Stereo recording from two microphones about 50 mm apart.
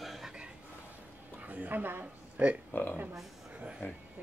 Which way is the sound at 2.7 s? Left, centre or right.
Left.